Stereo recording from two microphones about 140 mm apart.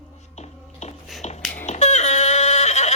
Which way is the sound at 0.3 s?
50° left (ahead or behind).